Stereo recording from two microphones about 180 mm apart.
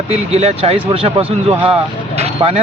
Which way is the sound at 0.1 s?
35° right (ahead or behind).